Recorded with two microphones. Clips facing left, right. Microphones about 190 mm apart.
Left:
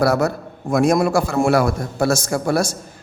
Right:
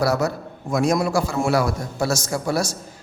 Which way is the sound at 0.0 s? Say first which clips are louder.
Left 3 dB; 55° left (ahead or behind).